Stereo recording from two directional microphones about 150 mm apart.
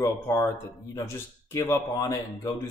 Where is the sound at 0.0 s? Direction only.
15° left (ahead or behind).